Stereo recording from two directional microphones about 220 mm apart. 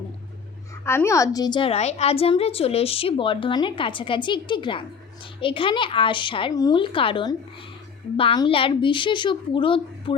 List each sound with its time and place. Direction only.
0.9 s a woman's voice: 10° left (ahead or behind)